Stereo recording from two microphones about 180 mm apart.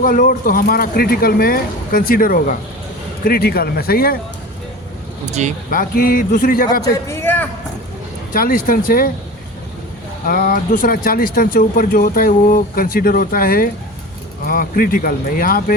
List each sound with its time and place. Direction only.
0.0 s speech: 50° left (ahead or behind)
5.4 s speech: 40° right (ahead or behind)
5.7 s speech: 55° left (ahead or behind)
7.1 s a sound: 10° left (ahead or behind)
8.3 s speech: 50° left (ahead or behind)
10.2 s speech: 55° left (ahead or behind)